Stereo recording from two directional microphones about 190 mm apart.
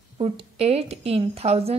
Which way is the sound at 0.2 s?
30° right (ahead or behind).